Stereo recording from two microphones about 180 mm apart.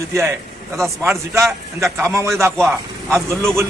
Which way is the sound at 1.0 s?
15° right (ahead or behind).